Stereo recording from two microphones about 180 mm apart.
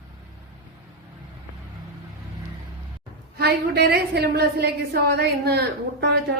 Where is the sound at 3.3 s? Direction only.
65° right (ahead or behind).